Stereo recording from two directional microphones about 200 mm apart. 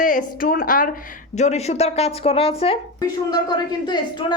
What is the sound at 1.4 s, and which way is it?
Speech, 35° left (ahead or behind).